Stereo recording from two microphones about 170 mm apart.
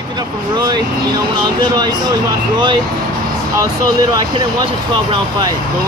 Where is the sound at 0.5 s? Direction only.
25° right (ahead or behind).